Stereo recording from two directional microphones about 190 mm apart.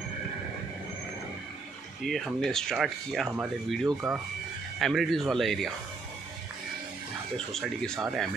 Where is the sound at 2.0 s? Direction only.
Centre (ahead or behind).